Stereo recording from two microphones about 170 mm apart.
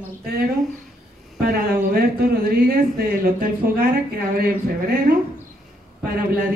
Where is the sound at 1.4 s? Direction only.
60° right (ahead or behind).